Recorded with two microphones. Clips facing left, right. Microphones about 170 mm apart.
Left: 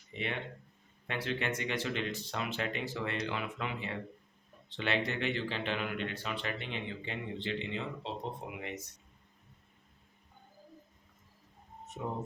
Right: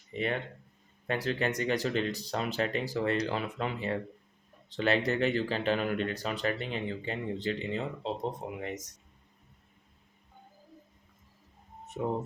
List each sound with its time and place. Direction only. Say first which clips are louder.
0.1 s speech: right 6 dB; 45° right (ahead or behind)
12.0 s speech: right 6 dB; 60° right (ahead or behind)